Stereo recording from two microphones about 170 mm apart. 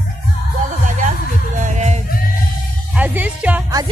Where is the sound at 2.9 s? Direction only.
10° right (ahead or behind).